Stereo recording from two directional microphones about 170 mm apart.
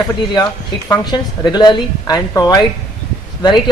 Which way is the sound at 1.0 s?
25° left (ahead or behind).